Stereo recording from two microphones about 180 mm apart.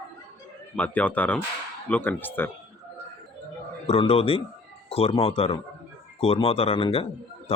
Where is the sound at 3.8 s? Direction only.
30° left (ahead or behind).